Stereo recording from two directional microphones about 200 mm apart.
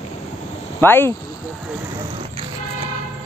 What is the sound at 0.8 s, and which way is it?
Speech, 10° left (ahead or behind).